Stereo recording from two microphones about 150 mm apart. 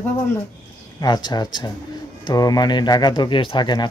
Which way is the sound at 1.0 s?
30° left (ahead or behind).